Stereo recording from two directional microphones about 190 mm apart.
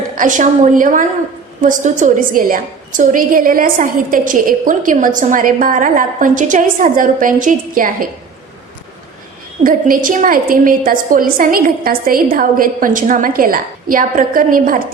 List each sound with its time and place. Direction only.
0.2 s a woman's voice: 40° right (ahead or behind)
9.6 s a woman's voice: 45° right (ahead or behind)